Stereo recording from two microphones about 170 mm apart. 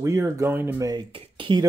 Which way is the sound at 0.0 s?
15° right (ahead or behind).